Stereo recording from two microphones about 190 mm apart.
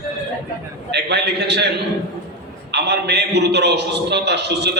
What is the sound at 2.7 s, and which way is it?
A man's voice, 60° right (ahead or behind).